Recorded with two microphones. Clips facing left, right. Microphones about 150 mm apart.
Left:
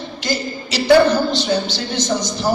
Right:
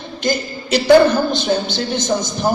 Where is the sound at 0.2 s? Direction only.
50° right (ahead or behind).